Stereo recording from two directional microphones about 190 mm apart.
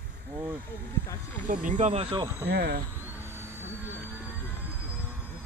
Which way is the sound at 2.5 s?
55° right (ahead or behind).